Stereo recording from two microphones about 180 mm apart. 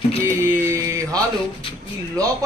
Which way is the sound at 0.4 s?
15° right (ahead or behind).